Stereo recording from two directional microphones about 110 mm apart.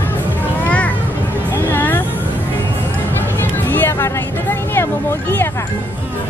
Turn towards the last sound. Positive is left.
turn(degrees=20)  # may be behind; listen again after turning